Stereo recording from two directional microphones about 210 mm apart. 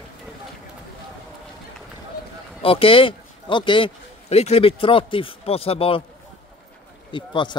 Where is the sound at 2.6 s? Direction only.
25° left (ahead or behind).